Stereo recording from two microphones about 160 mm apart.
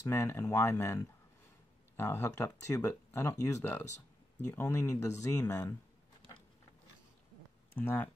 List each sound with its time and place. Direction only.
0.0 s speech: 20° left (ahead or behind)
7.7 s speech: 15° left (ahead or behind)